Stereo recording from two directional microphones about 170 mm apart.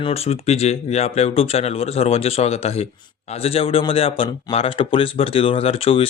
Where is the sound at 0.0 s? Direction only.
35° left (ahead or behind).